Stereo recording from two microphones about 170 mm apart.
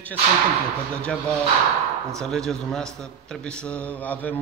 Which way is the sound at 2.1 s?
5° left (ahead or behind).